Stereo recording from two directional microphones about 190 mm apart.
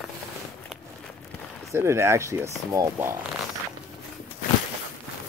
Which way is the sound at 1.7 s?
15° right (ahead or behind).